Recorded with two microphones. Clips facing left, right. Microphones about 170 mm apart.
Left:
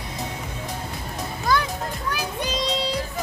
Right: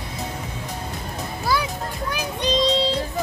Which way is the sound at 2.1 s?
20° right (ahead or behind).